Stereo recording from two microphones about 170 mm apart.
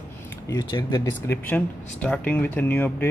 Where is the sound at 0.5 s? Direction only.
25° left (ahead or behind).